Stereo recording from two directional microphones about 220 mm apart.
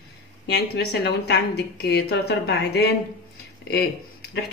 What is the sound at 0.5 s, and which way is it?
A woman's voice, 45° left (ahead or behind).